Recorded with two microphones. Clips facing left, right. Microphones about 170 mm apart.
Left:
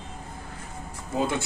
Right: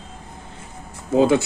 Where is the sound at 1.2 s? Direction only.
90° right.